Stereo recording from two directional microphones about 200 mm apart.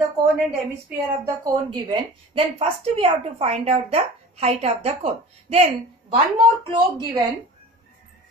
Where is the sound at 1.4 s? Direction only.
20° right (ahead or behind).